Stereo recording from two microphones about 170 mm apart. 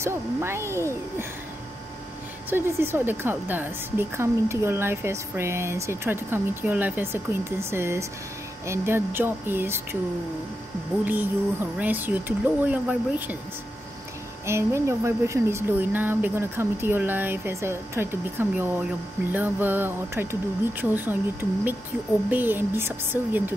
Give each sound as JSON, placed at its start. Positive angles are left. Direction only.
{"t": 0.0, "sound": "a woman's voice", "side_deg": -15}
{"t": 2.5, "sound": "a woman's voice", "side_deg": -15}
{"t": 11.1, "sound": "a woman's voice", "side_deg": -10}
{"t": 14.4, "sound": "a woman's voice", "side_deg": -15}